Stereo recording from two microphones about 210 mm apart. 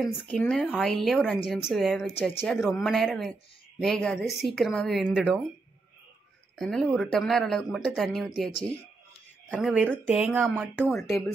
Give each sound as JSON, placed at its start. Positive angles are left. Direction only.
{"t": 0.3, "sound": "speech", "side_deg": 5}
{"t": 6.5, "sound": "speech", "side_deg": 0}
{"t": 8.5, "sound": "speech", "side_deg": 25}
{"t": 9.5, "sound": "speech", "side_deg": -5}
{"t": 10.8, "sound": "speech", "side_deg": 0}